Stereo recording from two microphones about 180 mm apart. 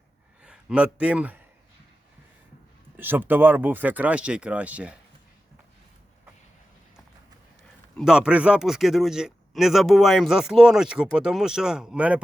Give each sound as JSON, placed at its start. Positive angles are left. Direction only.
{"t": 0.4, "sound": "a man's voice", "side_deg": -5}
{"t": 3.0, "sound": "speech", "side_deg": -10}
{"t": 7.9, "sound": "speech", "side_deg": -5}